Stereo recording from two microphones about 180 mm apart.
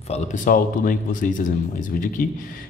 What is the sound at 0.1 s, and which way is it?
Speech, 45° left (ahead or behind).